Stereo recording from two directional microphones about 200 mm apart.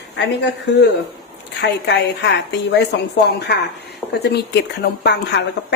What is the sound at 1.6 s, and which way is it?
Speech, 60° left (ahead or behind).